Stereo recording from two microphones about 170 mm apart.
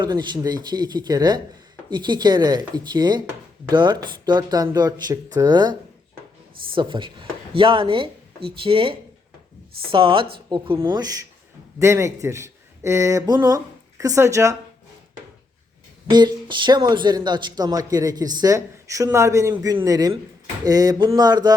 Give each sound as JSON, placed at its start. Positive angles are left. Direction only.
{"t": 0.0, "sound": "speech", "side_deg": -25}
{"t": 6.7, "sound": "speech", "side_deg": -30}
{"t": 16.0, "sound": "speech", "side_deg": -25}